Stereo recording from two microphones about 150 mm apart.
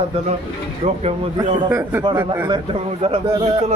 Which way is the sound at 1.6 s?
15° right (ahead or behind).